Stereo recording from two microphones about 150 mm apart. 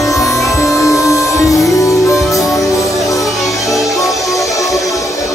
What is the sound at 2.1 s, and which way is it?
Music, centre (ahead or behind).